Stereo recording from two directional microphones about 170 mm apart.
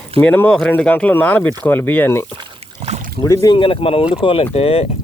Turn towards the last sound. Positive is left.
turn(degrees=35)  # may be behind; listen again after turning